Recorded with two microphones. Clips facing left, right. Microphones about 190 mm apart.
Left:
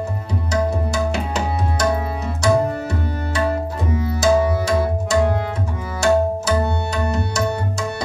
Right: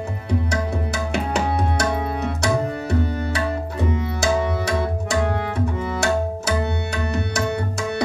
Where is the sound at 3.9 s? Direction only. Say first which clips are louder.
Left 6 dB; 65° right (ahead or behind).